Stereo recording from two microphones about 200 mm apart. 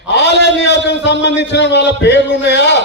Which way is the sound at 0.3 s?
60° left (ahead or behind).